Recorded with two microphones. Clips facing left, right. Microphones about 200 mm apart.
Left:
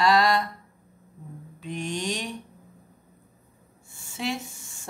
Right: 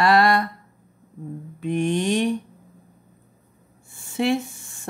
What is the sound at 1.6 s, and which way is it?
Speech, 55° right (ahead or behind).